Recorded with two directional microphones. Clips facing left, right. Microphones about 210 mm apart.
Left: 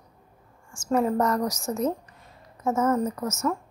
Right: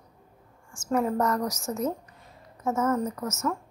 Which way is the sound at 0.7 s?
30° left (ahead or behind).